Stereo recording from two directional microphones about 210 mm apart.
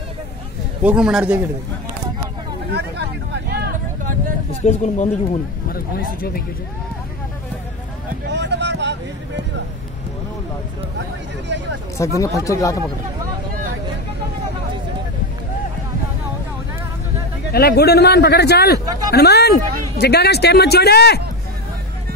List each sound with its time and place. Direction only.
0.8 s a man's voice: 5° right (ahead or behind)
2.7 s vehicle: 55° right (ahead or behind)
4.6 s speech: 35° left (ahead or behind)
8.3 s vehicle: 55° right (ahead or behind)
12.0 s speech: 15° left (ahead or behind)
17.5 s speech: 50° left (ahead or behind)